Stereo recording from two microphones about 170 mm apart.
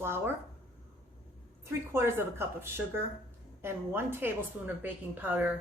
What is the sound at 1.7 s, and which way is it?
Speech, 15° right (ahead or behind).